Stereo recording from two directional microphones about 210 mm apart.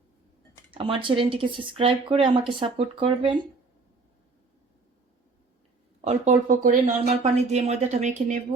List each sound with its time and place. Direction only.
0.7 s speech: 25° right (ahead or behind)
6.1 s speech: 35° right (ahead or behind)